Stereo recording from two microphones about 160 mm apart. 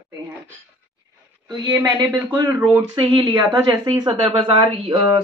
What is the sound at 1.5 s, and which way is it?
A woman's voice, 25° right (ahead or behind).